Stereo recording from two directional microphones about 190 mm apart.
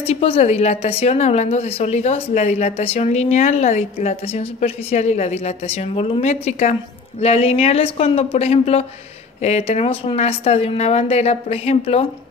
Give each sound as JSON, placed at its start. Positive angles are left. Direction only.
{"t": 0.0, "sound": "a woman's voice", "side_deg": 30}